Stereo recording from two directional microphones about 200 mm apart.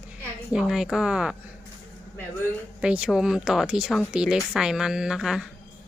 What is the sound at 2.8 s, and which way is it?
Speech, 5° right (ahead or behind).